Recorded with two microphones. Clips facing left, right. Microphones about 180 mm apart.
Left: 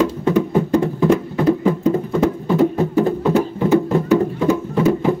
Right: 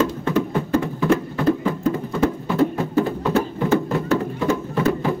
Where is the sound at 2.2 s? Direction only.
15° left (ahead or behind).